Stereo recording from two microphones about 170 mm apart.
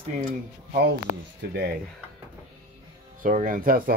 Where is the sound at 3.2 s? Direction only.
50° right (ahead or behind).